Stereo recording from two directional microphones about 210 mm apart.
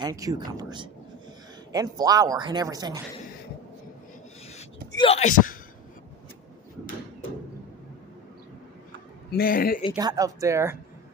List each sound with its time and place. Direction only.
0.0 s speech: 15° right (ahead or behind)
4.9 s speech: 30° left (ahead or behind)
9.3 s a man's voice: 45° left (ahead or behind)
9.9 s speech: 15° right (ahead or behind)